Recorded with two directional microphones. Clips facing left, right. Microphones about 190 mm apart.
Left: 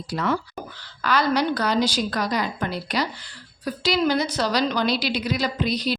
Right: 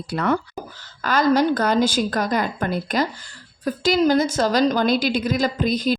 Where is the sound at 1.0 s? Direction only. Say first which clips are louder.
Right 4 dB; 45° right (ahead or behind).